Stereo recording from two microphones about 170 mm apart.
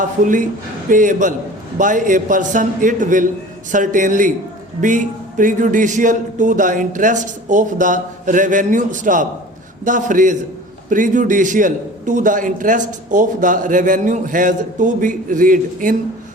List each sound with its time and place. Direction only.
0.2 s a man's voice: 50° right (ahead or behind)